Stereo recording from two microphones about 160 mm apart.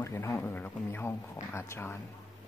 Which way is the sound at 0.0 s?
15° left (ahead or behind).